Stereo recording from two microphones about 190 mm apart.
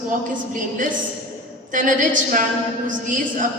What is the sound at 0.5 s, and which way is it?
Speech, 45° right (ahead or behind).